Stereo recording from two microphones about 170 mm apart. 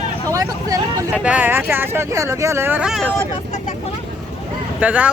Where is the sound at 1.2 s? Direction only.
10° right (ahead or behind).